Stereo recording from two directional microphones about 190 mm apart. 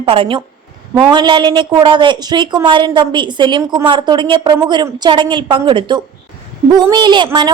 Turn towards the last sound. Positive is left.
turn(degrees=-25)  # may be behind; listen again after turning